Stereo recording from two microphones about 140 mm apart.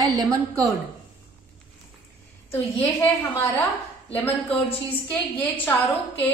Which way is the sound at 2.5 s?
15° left (ahead or behind).